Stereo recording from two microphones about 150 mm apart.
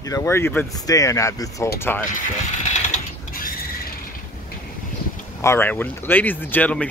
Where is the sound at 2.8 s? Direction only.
70° left (ahead or behind).